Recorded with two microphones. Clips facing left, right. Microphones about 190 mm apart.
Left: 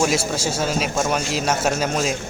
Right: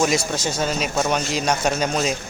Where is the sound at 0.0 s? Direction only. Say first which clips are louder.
Even; 5° left (ahead or behind).